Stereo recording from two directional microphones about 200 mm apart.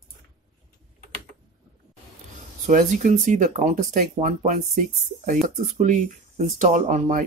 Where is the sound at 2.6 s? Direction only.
40° right (ahead or behind).